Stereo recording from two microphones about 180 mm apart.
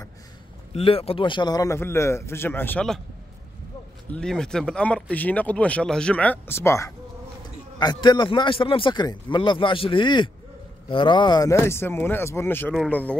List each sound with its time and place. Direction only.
0.7 s speech: 30° left (ahead or behind); by 3.0 s 5° left (ahead or behind)
4.1 s speech: 5° left (ahead or behind)
7.8 s a man's voice: 25° left (ahead or behind); by 13.2 s 5° left (ahead or behind)